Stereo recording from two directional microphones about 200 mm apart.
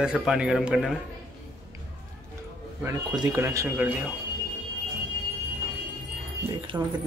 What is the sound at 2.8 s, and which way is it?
Speech, 15° right (ahead or behind).